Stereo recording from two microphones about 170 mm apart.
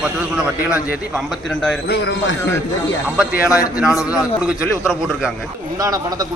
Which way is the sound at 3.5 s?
20° left (ahead or behind).